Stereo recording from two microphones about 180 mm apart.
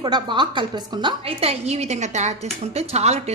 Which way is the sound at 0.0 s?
25° right (ahead or behind).